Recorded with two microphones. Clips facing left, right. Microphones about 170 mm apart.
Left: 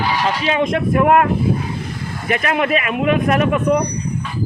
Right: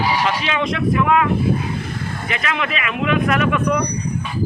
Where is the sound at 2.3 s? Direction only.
50° left (ahead or behind).